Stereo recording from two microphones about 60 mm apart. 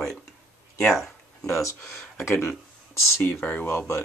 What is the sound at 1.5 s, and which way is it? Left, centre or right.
Speech, left.